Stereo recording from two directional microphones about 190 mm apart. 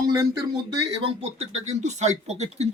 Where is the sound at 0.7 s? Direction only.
30° right (ahead or behind).